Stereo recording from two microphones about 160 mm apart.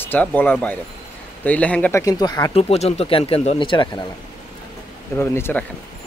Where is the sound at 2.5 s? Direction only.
40° left (ahead or behind).